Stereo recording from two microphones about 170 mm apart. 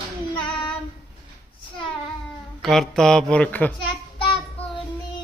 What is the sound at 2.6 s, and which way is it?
Speech, centre (ahead or behind).